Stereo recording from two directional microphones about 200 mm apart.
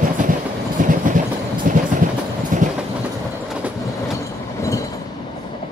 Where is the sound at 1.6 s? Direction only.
40° right (ahead or behind).